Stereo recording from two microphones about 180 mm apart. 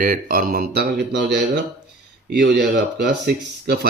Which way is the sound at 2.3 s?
65° right (ahead or behind).